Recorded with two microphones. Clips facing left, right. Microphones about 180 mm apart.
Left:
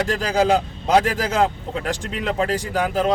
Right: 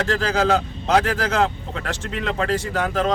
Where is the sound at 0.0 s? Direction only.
10° left (ahead or behind).